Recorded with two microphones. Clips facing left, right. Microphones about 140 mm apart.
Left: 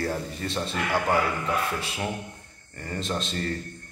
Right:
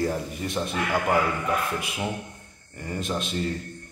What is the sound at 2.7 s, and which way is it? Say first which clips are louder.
Speech: right 1 dB; 10° right (ahead or behind).